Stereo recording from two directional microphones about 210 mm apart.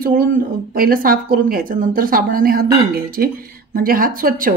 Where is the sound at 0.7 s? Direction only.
45° right (ahead or behind).